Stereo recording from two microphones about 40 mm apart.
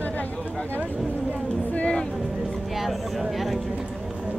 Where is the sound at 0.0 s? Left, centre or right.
Left.